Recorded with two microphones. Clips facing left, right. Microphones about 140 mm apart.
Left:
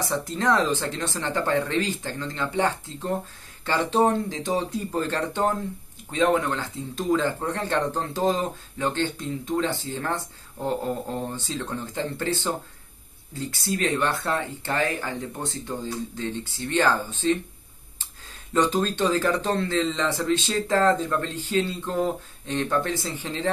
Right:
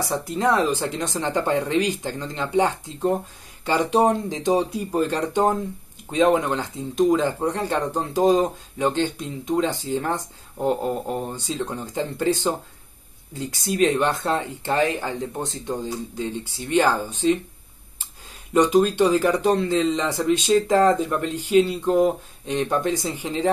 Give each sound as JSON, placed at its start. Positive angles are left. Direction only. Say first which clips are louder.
{"t": 0.0, "sound": "speech", "louder": "right 3 dB", "side_deg": -15}
{"t": 18.5, "sound": "speech", "louder": "right 5 dB", "side_deg": -15}